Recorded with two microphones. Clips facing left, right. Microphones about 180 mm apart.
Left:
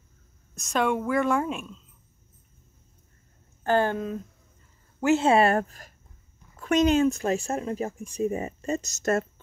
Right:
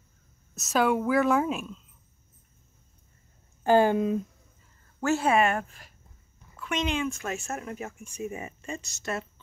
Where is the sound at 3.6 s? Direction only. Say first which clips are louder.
Right 3 dB; 10° right (ahead or behind).